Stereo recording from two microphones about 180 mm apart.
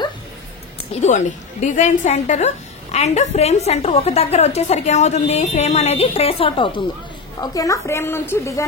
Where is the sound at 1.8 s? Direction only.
40° left (ahead or behind).